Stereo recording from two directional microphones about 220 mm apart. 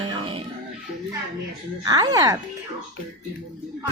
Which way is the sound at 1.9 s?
15° right (ahead or behind).